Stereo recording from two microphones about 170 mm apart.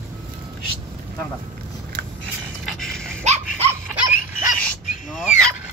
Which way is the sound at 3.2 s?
40° right (ahead or behind).